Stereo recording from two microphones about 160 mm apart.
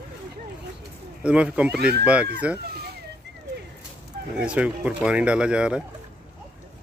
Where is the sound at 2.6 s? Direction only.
75° right (ahead or behind).